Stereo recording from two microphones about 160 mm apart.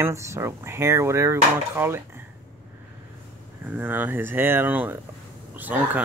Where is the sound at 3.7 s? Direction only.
10° right (ahead or behind).